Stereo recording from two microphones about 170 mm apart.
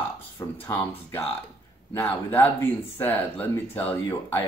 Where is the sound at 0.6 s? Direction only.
15° left (ahead or behind).